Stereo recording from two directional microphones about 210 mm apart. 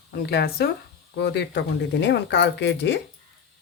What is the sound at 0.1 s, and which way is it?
Speech, 50° left (ahead or behind).